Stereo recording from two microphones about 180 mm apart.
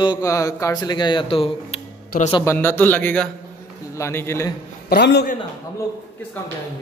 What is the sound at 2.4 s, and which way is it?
A man's voice, 15° left (ahead or behind).